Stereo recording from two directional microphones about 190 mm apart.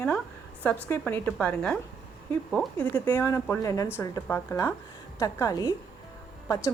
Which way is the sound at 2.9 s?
10° left (ahead or behind).